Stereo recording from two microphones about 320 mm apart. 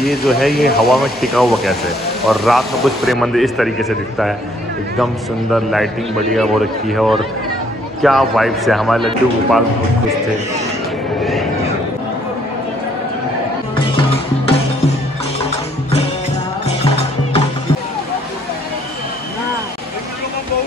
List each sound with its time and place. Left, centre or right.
0.0 s a man's voice: centre
16.6 s music: centre